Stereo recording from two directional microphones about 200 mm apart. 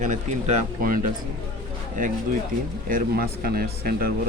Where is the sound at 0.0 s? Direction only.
35° right (ahead or behind).